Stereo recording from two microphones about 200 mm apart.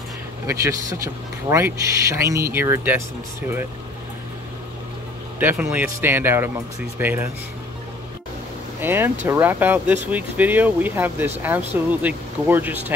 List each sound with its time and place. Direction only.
0.5 s speech: 15° right (ahead or behind)
5.4 s speech: 10° right (ahead or behind)
8.8 s speech: 10° right (ahead or behind)